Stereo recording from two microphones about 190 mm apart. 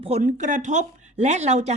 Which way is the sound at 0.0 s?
35° right (ahead or behind).